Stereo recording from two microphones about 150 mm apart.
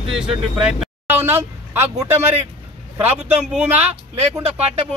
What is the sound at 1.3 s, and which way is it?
Speech, 20° right (ahead or behind).